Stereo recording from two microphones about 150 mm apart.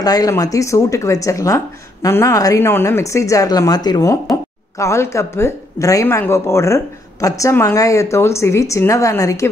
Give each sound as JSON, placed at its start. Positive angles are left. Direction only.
{"t": 0.0, "sound": "speech", "side_deg": 25}